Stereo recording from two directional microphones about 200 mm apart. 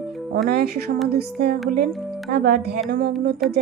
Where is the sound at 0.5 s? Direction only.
50° right (ahead or behind).